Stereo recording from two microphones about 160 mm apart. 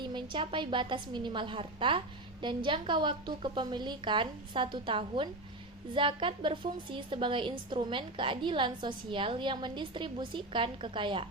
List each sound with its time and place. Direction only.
0.0 s a woman's voice: 30° right (ahead or behind)